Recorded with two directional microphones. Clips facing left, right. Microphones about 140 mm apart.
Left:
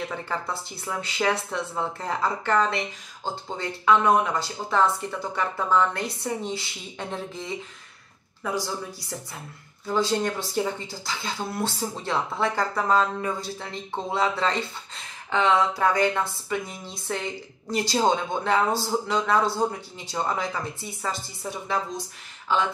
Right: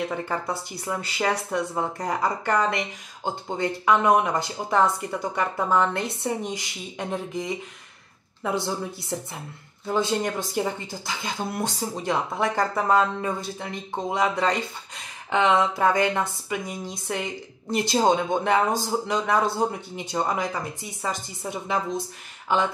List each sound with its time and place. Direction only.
0.1 s speech: 15° right (ahead or behind)
3.8 s speech: 20° right (ahead or behind)
8.4 s speech: 25° right (ahead or behind)